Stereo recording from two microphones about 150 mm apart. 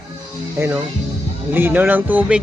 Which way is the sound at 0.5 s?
15° right (ahead or behind).